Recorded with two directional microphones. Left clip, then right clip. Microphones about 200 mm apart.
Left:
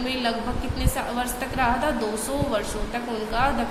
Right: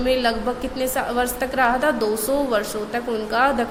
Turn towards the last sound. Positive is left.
turn(degrees=-30)  # may be behind; listen again after turning